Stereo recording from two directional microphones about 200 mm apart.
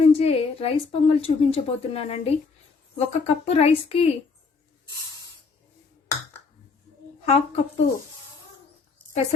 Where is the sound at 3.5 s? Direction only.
30° left (ahead or behind).